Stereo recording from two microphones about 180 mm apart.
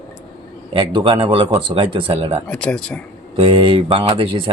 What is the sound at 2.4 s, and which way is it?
Speech, 5° left (ahead or behind).